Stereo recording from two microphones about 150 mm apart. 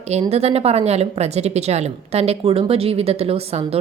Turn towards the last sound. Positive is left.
turn(degrees=-40)  # may be behind; listen again after turning